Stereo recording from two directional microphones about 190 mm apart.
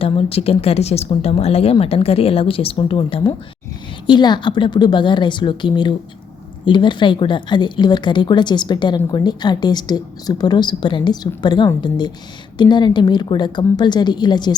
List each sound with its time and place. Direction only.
0.0 s a woman's voice: 30° left (ahead or behind)